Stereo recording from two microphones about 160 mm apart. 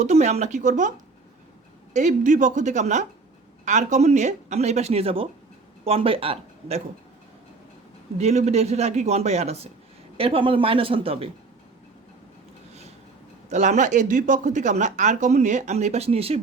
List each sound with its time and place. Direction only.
0.0 s speech: 45° right (ahead or behind)
8.2 s speech: 45° right (ahead or behind)
13.5 s speech: 50° right (ahead or behind)